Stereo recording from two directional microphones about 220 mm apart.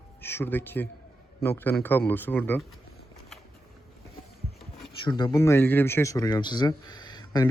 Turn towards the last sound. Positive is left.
turn(degrees=20)  # may be behind; listen again after turning